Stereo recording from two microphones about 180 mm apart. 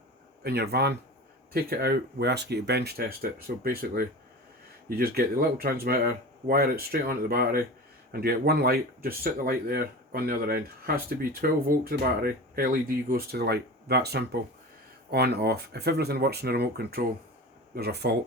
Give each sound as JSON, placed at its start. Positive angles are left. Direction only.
{"t": 0.4, "sound": "speech", "side_deg": -65}